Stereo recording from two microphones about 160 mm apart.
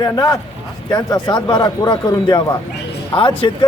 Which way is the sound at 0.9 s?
25° left (ahead or behind).